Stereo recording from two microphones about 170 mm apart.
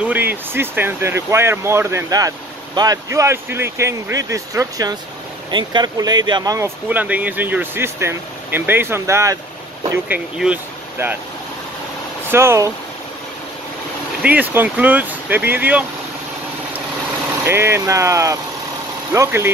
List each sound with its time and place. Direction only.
0.0 s speech: 10° right (ahead or behind)
6.9 s speech: 10° right (ahead or behind)
10.0 s speech: 5° right (ahead or behind)
12.3 s speech: 15° right (ahead or behind)
14.2 s speech: 10° right (ahead or behind)
17.5 s speech: 15° right (ahead or behind)